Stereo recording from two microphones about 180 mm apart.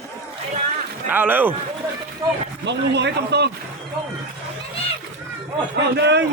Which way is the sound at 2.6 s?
70° right (ahead or behind).